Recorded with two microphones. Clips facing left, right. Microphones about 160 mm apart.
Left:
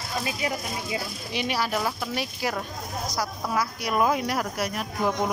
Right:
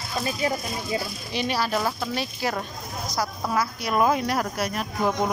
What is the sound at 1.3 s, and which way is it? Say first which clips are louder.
Speech: right 2 dB; 10° left (ahead or behind).